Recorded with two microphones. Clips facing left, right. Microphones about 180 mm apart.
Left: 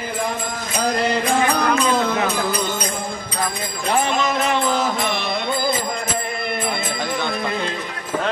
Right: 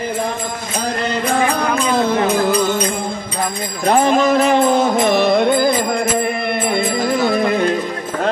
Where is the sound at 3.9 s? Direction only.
50° right (ahead or behind).